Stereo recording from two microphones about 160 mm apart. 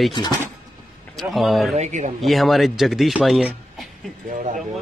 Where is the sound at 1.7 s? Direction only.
45° right (ahead or behind).